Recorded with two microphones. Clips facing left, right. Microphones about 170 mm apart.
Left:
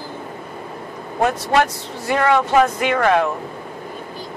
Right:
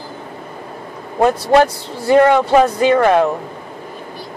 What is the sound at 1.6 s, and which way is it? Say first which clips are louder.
Speech: right 7 dB; 30° right (ahead or behind).